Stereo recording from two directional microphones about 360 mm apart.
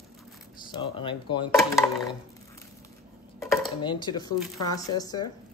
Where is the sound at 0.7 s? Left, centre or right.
Centre.